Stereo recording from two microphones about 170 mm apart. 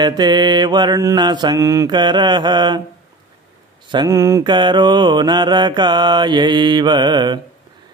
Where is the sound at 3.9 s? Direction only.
20° right (ahead or behind).